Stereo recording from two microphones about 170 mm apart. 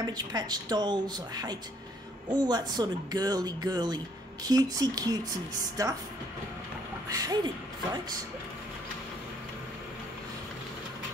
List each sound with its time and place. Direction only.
0.0 s speech: 25° right (ahead or behind)
7.1 s speech: 20° right (ahead or behind)